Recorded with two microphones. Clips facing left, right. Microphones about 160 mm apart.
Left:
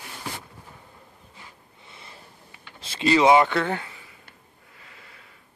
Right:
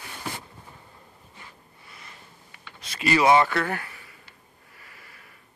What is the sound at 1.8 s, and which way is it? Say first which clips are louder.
Snort: left 2 dB; 25° left (ahead or behind).